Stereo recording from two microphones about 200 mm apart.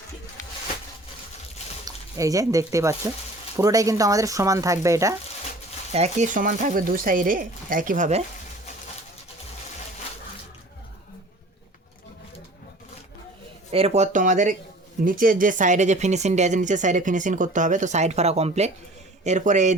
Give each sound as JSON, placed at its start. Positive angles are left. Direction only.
{"t": 1.8, "sound": "speech", "side_deg": -15}
{"t": 5.9, "sound": "speech", "side_deg": -35}
{"t": 13.7, "sound": "speech", "side_deg": -30}